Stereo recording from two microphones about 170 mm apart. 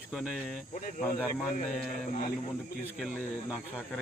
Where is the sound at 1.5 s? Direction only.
50° left (ahead or behind).